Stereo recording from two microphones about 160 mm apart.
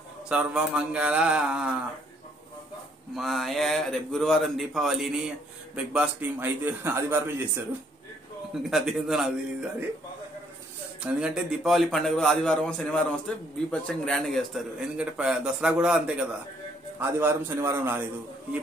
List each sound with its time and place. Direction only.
0.3 s a man's voice: 5° right (ahead or behind)
3.2 s a man's voice: centre (ahead or behind)
5.9 s a man's voice: 10° right (ahead or behind)
8.6 s a man's voice: centre (ahead or behind)
11.0 s a man's voice: 5° right (ahead or behind)
17.0 s a man's voice: 15° right (ahead or behind)